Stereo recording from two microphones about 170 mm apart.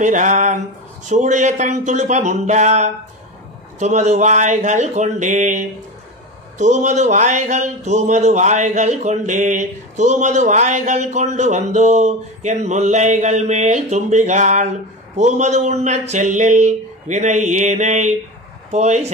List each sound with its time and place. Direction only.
0.0 s speech: 45° right (ahead or behind)